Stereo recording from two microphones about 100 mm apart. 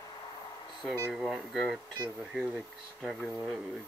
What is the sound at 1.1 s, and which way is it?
Speech, 5° right (ahead or behind).